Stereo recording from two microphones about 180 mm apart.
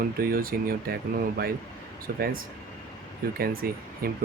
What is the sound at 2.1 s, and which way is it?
Speech, 55° right (ahead or behind).